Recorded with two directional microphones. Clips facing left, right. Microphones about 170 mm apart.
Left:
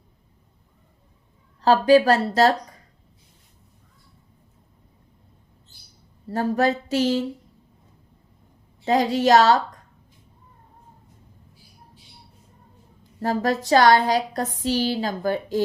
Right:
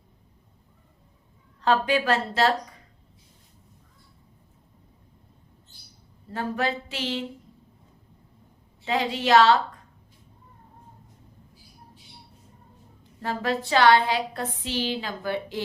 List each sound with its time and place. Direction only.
1.6 s a woman's voice: 35° left (ahead or behind)
6.2 s a woman's voice: 40° left (ahead or behind)
8.8 s a woman's voice: 40° left (ahead or behind)
13.1 s a woman's voice: 40° left (ahead or behind)